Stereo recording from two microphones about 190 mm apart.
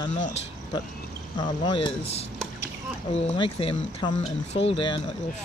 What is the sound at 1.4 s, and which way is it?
Speech, 25° left (ahead or behind).